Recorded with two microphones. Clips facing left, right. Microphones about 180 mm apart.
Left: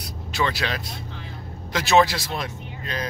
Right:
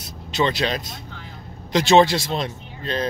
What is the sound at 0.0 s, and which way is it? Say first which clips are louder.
Vehicle: right 4 dB; 20° right (ahead or behind).